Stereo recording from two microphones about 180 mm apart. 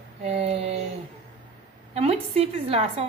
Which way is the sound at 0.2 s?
35° right (ahead or behind).